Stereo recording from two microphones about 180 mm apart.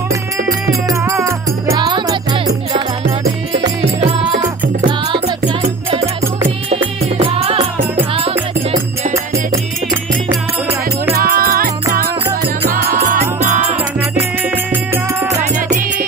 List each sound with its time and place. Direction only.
0.5 s music: 20° right (ahead or behind)
4.2 s music: 25° right (ahead or behind)
6.7 s music: 30° right (ahead or behind)
11.3 s music: 55° right (ahead or behind)
13.1 s music: 40° right (ahead or behind)